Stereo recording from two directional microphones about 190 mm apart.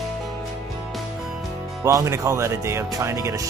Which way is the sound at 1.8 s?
15° right (ahead or behind).